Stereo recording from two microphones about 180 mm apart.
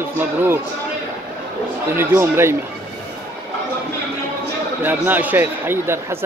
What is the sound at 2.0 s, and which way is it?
Speech, 15° right (ahead or behind).